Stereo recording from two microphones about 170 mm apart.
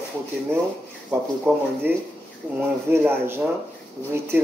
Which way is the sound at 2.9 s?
15° right (ahead or behind).